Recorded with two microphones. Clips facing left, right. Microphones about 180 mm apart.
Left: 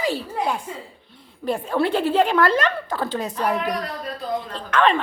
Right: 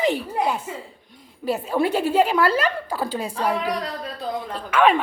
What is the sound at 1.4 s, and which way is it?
A woman's voice, 5° right (ahead or behind).